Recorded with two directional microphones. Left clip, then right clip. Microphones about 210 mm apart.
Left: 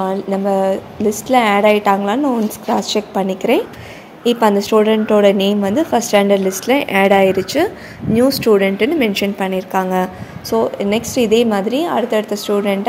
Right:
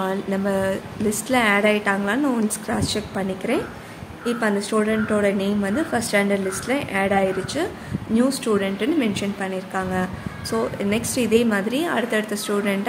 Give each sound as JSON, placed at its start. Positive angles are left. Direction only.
{"t": 0.0, "sound": "a woman's voice", "side_deg": 10}
{"t": 10.5, "sound": "a woman's voice", "side_deg": 15}